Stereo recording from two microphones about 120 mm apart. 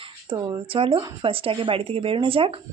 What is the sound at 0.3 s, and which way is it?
A woman's voice, 40° right (ahead or behind).